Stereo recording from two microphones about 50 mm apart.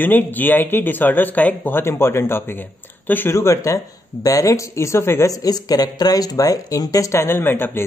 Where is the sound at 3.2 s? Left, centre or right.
Left.